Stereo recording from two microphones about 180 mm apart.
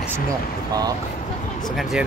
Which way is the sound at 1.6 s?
Centre (ahead or behind).